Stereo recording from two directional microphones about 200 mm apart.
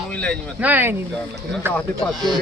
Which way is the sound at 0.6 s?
10° right (ahead or behind).